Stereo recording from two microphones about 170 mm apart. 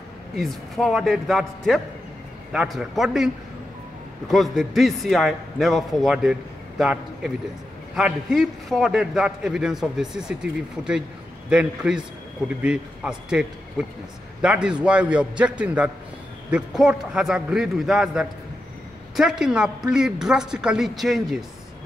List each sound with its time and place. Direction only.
0.4 s a man's voice: centre (ahead or behind)
4.3 s a man's voice: centre (ahead or behind)